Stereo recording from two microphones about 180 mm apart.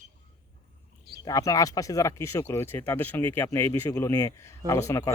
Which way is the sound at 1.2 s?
20° left (ahead or behind).